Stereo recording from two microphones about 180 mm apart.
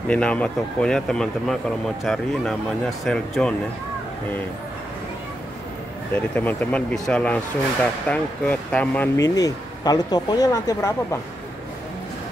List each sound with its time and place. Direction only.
0.1 s speech: 5° left (ahead or behind)
6.1 s speech: 10° left (ahead or behind)